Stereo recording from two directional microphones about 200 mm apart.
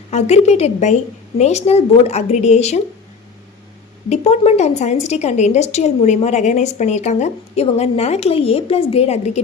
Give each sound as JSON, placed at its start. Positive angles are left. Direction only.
{"t": 0.1, "sound": "a woman's voice", "side_deg": 35}
{"t": 4.1, "sound": "a woman's voice", "side_deg": 35}